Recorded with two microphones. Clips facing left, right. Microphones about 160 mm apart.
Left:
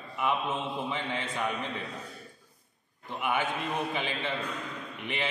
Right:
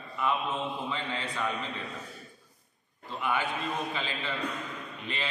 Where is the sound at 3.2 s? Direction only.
20° left (ahead or behind).